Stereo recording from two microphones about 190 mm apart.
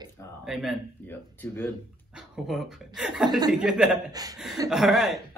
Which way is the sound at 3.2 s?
20° right (ahead or behind).